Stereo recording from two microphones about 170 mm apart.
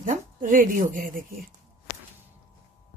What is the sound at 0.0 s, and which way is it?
A woman's voice, 50° right (ahead or behind).